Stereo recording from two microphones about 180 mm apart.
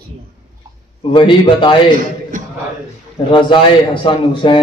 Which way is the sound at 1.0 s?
30° left (ahead or behind).